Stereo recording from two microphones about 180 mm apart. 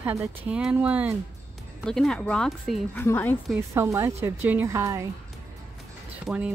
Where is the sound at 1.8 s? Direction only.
5° left (ahead or behind).